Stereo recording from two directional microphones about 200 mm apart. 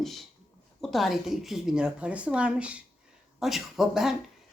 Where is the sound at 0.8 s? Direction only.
Centre (ahead or behind).